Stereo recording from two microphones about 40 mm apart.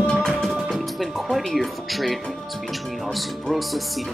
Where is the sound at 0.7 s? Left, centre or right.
Centre.